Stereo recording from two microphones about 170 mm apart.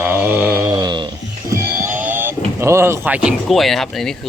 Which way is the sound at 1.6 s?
15° right (ahead or behind).